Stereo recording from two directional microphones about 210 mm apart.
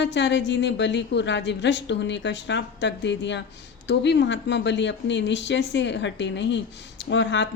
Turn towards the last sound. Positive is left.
turn(degrees=60)  # may be behind; listen again after turning